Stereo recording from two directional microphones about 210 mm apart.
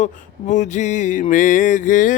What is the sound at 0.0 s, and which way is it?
Mantra, 35° left (ahead or behind).